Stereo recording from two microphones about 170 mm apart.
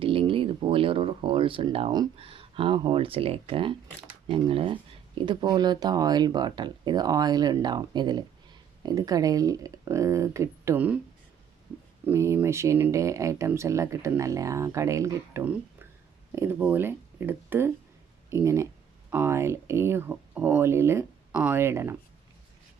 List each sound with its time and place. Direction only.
0.0 s speech: 30° right (ahead or behind); by 10.9 s 15° right (ahead or behind)
12.0 s speech: 15° right (ahead or behind)